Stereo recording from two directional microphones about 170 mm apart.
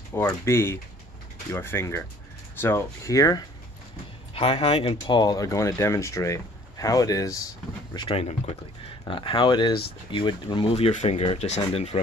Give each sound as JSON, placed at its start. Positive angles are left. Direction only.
{"t": 0.1, "sound": "speech", "side_deg": 15}
{"t": 4.3, "sound": "speech", "side_deg": 35}
{"t": 7.9, "sound": "speech", "side_deg": 30}